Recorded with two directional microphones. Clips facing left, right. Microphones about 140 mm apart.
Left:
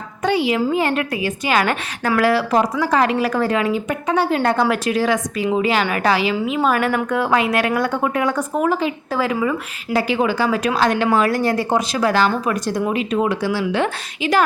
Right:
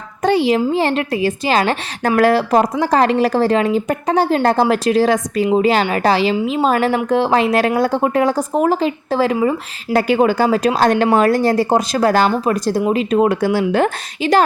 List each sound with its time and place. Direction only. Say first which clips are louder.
0.2 s a woman's voice: right 4 dB; 40° right (ahead or behind)
2.1 s a woman's voice: right 3 dB; 45° right (ahead or behind)
9.9 s a woman's voice: right 4 dB; 50° right (ahead or behind)